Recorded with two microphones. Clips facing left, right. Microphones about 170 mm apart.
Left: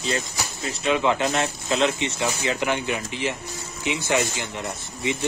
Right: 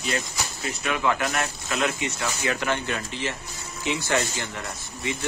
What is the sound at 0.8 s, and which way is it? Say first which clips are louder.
Speech: left 4 dB; 20° left (ahead or behind).